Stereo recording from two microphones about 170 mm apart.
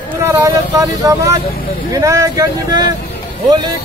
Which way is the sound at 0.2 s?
15° right (ahead or behind).